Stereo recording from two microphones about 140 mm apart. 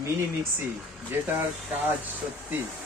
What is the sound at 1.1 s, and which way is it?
Speech, 15° right (ahead or behind).